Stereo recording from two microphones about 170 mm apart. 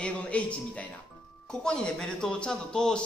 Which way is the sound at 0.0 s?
5° left (ahead or behind).